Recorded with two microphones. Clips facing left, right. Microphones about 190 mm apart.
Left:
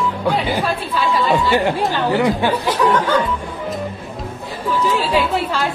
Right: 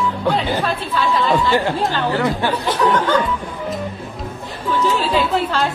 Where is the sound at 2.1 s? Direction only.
15° left (ahead or behind).